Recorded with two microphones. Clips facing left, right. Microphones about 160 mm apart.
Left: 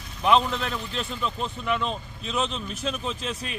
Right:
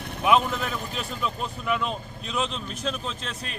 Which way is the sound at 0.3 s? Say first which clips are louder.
Even; 5° right (ahead or behind).